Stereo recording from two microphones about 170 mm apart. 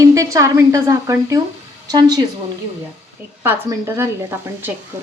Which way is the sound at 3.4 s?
15° right (ahead or behind).